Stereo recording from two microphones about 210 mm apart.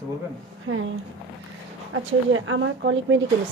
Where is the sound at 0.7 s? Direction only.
60° right (ahead or behind).